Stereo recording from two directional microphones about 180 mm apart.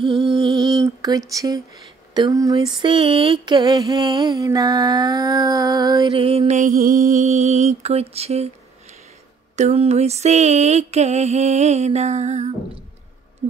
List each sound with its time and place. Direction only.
0.0 s music: 30° right (ahead or behind)
1.3 s a sound: 20° right (ahead or behind); by 8.5 s 35° right (ahead or behind)
9.6 s music: 40° right (ahead or behind)
13.4 s owl: 35° right (ahead or behind)